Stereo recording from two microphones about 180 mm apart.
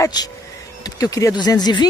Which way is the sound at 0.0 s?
20° left (ahead or behind).